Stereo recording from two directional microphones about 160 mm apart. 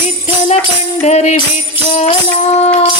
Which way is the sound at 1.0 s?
45° left (ahead or behind).